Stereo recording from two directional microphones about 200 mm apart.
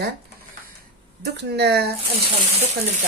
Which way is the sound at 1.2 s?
55° right (ahead or behind).